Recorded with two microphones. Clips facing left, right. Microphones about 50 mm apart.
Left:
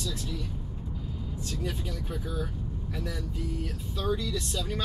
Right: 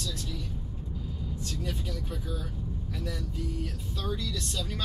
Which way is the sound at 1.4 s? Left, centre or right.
Centre.